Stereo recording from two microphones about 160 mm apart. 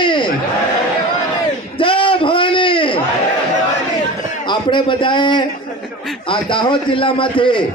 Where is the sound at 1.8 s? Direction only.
35° left (ahead or behind).